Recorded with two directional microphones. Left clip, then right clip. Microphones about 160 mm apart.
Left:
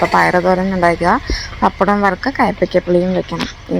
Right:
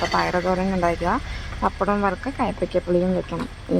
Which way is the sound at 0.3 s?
20° left (ahead or behind).